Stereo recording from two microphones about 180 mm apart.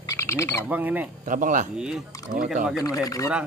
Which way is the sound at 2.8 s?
20° left (ahead or behind).